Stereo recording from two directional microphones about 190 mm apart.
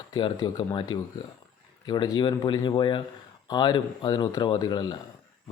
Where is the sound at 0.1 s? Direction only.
25° left (ahead or behind).